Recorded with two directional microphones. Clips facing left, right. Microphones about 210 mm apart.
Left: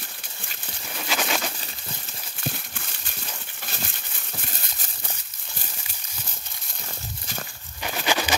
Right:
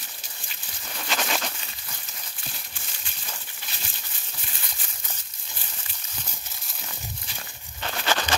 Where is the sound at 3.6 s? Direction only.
50° left (ahead or behind).